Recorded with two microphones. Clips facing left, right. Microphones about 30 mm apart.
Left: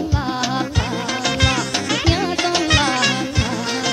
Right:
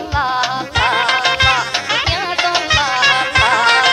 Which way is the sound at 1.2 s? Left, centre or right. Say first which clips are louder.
Right 6 dB; right.